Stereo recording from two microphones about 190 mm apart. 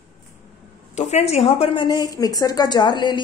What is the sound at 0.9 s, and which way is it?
Speech, 35° left (ahead or behind).